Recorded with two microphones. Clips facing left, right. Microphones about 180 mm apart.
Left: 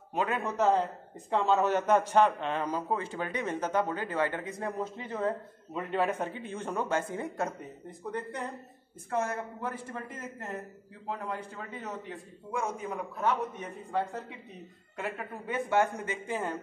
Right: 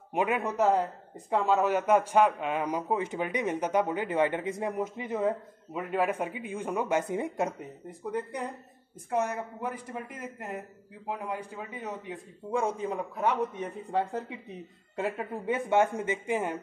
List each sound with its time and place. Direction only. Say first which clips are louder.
0.1 s speech: right 3 dB; 15° right (ahead or behind)
12.5 s speech: right 4 dB; 30° right (ahead or behind)
15.0 s speech: right 5 dB; 25° right (ahead or behind)